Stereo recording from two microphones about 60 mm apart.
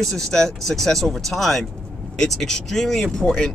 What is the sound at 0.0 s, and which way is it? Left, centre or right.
Speech, centre.